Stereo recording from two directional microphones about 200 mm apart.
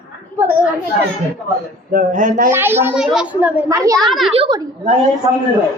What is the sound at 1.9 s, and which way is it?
Speech, 45° right (ahead or behind).